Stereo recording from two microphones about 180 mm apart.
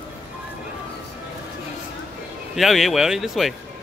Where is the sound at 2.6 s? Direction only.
Centre (ahead or behind).